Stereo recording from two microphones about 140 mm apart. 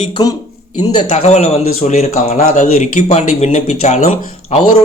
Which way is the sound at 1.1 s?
55° left (ahead or behind).